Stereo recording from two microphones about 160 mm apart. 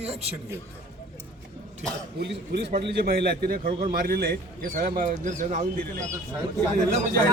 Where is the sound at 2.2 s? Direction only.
90° right; by 4.2 s 70° right (ahead or behind).